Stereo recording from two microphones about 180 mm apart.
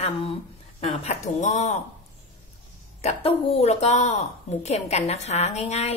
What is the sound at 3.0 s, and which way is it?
A woman's voice, 35° left (ahead or behind).